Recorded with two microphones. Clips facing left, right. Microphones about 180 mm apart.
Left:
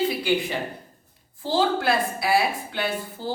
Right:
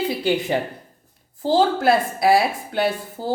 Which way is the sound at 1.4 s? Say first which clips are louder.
Right 5 dB; 40° right (ahead or behind).